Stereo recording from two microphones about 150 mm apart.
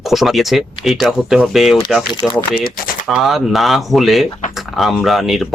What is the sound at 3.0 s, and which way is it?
Speech, centre (ahead or behind).